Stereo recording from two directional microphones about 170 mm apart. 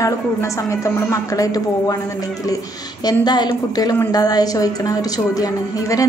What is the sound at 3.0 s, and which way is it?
A woman's voice, 25° left (ahead or behind).